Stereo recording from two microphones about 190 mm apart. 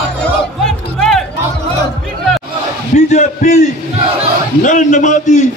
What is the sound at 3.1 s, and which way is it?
A man's voice, 40° left (ahead or behind).